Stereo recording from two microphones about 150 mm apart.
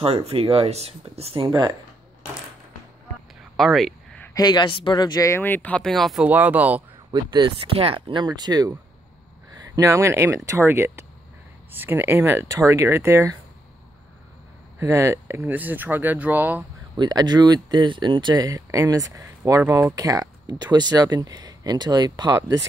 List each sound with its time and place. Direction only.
0.0 s speech: 40° right (ahead or behind)
3.5 s a sound: centre (ahead or behind)
4.3 s speech: 25° left (ahead or behind); by 6.2 s centre (ahead or behind)
6.2 s speech: 10° right (ahead or behind)
7.1 s speech: 30° right (ahead or behind)
9.8 s speech: 20° right (ahead or behind)
14.8 s speech: 20° right (ahead or behind)
16.9 s speech: 30° right (ahead or behind)